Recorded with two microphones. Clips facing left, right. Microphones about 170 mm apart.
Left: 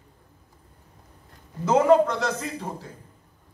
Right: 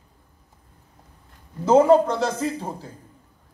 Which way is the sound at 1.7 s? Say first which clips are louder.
Right 3 dB; 30° right (ahead or behind).